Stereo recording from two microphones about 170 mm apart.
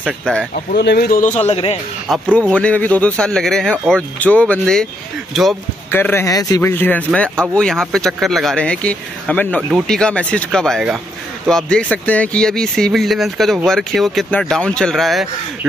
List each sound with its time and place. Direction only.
0.2 s speech: 5° left (ahead or behind)
0.7 s speech: 75° left (ahead or behind)
1.2 s a man's voice: 40° left (ahead or behind)
2.0 s speech: 5° right (ahead or behind)
2.5 s speech: 10° left (ahead or behind)
5.9 s speech: 15° left (ahead or behind)
9.6 s speech: 5° right (ahead or behind)
9.8 s speech: 5° left (ahead or behind)